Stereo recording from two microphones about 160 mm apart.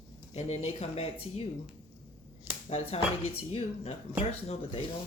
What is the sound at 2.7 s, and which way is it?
Speech, 40° left (ahead or behind).